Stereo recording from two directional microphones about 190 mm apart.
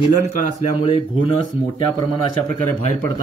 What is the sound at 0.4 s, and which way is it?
Speech, 35° left (ahead or behind).